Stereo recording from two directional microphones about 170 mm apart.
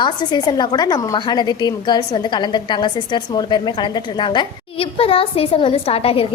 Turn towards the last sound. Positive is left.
turn(degrees=35)  # may be behind; listen again after turning